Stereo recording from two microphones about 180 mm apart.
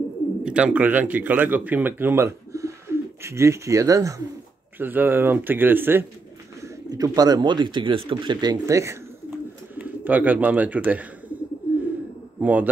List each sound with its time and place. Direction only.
0.4 s speech: 5° right (ahead or behind)
12.4 s a man's voice: 10° right (ahead or behind)